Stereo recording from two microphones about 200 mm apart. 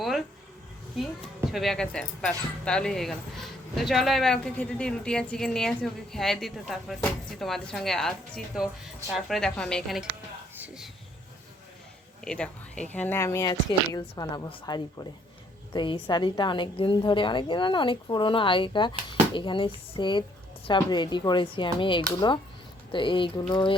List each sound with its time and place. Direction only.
0.0 s a sound: centre (ahead or behind)
1.5 s speech: centre (ahead or behind)
12.2 s a woman's voice: 5° left (ahead or behind); by 23.7 s 25° left (ahead or behind)